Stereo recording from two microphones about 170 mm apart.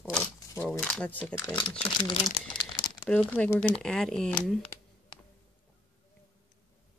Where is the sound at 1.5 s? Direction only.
30° left (ahead or behind).